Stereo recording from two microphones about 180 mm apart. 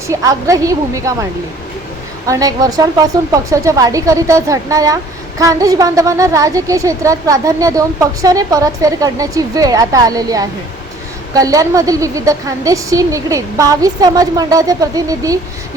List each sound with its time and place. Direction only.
0.1 s a woman's voice: 15° right (ahead or behind)